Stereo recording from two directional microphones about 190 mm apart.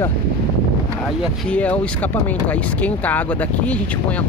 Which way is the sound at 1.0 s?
Centre (ahead or behind).